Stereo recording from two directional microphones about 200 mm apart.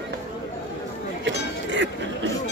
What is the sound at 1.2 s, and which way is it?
Speech, 65° right (ahead or behind).